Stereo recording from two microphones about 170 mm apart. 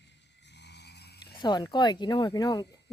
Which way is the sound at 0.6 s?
80° left.